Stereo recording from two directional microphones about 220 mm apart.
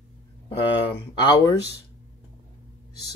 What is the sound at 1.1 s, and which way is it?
Speech, 20° left (ahead or behind).